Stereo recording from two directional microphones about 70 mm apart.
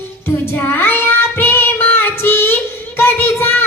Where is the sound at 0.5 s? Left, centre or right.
Left.